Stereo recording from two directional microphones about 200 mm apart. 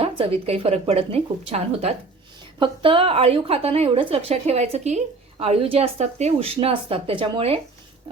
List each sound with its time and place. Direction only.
0.0 s a woman's voice: 30° right (ahead or behind)